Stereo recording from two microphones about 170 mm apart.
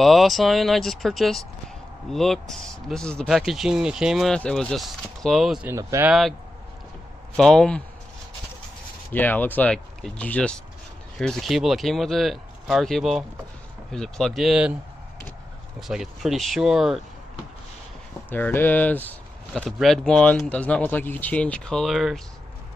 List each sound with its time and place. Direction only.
0.0 s speech: centre (ahead or behind)
5.7 s speech: 15° right (ahead or behind)
6.0 s speech: centre (ahead or behind)
7.3 s speech: 5° left (ahead or behind)
9.1 s speech: 10° left (ahead or behind)
15.9 s speech: centre (ahead or behind)
18.3 s speech: 10° left (ahead or behind)